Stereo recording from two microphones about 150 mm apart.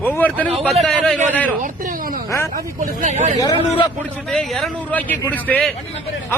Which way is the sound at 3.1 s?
50° right (ahead or behind).